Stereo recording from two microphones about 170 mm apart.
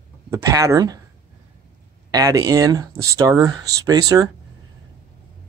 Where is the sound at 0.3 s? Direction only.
15° right (ahead or behind).